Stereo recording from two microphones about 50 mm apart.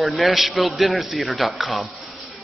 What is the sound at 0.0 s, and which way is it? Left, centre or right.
Speech, centre.